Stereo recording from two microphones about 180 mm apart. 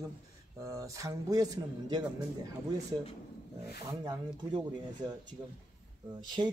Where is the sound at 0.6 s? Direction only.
15° right (ahead or behind).